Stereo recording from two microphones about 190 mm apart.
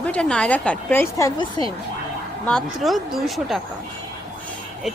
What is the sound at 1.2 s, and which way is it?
Speech, 20° left (ahead or behind).